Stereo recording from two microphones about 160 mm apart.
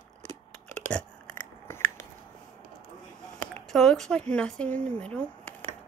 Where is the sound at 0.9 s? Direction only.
15° left (ahead or behind).